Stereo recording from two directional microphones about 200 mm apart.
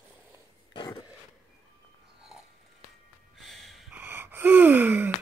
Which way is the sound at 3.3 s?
Centre (ahead or behind).